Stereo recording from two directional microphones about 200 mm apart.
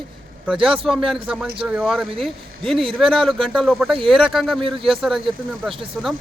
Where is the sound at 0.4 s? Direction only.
5° right (ahead or behind).